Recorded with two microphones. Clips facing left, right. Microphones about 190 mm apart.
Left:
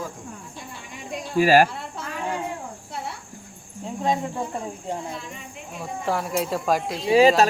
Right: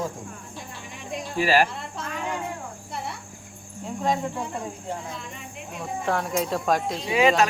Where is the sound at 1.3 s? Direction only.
45° left (ahead or behind).